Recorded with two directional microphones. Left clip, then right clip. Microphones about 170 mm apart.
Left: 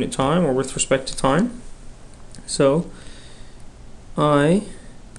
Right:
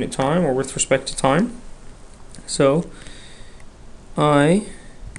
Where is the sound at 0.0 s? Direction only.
5° right (ahead or behind).